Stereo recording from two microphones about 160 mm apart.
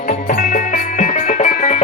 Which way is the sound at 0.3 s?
55° left (ahead or behind).